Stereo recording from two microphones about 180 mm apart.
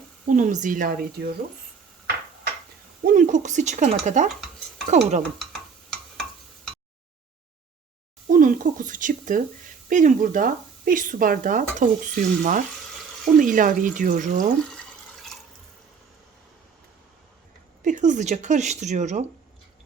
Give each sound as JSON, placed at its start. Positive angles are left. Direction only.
{"t": 0.3, "sound": "speech", "side_deg": -45}
{"t": 3.0, "sound": "speech", "side_deg": -45}
{"t": 5.4, "sound": "a sound", "side_deg": 5}
{"t": 8.3, "sound": "speech", "side_deg": -45}
{"t": 14.7, "sound": "drip", "side_deg": 0}
{"t": 17.8, "sound": "speech", "side_deg": -45}